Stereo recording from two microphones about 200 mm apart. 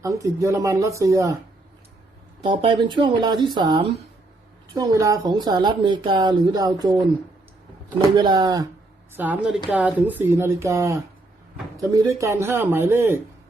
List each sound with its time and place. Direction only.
0.0 s speech: 15° right (ahead or behind)
2.4 s speech: 25° right (ahead or behind)
7.9 s speech: 20° right (ahead or behind)
9.1 s speech: 10° right (ahead or behind)